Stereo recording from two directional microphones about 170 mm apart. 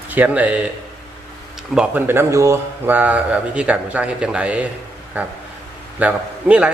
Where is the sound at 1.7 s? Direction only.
10° right (ahead or behind).